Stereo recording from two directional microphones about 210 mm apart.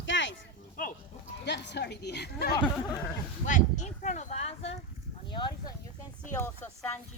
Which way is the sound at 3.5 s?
35° left (ahead or behind).